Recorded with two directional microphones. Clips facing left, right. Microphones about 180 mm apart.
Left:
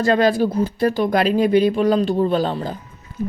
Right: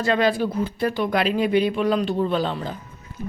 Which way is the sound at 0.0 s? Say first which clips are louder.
Left 4 dB; 40° left (ahead or behind).